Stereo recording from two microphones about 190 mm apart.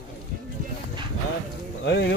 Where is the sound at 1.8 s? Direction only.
65° left (ahead or behind).